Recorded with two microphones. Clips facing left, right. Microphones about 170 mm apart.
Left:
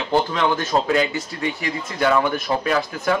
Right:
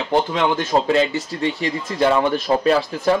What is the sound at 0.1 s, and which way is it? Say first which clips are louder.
Speech: right 1 dB; 20° right (ahead or behind).